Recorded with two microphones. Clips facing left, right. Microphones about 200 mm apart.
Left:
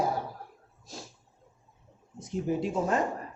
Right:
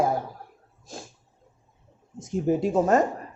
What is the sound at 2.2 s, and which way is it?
Speech, 45° right (ahead or behind).